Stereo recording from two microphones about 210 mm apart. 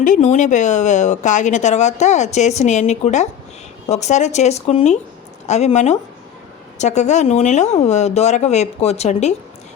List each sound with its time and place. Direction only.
0.0 s speech: 35° left (ahead or behind)